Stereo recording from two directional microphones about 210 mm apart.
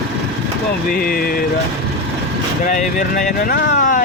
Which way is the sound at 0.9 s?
45° left (ahead or behind).